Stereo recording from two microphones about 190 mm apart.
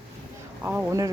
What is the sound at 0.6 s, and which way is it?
Speech, 10° right (ahead or behind).